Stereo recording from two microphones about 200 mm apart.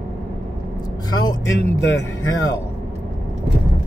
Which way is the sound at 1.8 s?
65° left (ahead or behind).